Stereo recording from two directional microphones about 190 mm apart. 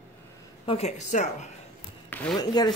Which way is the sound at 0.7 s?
35° left (ahead or behind).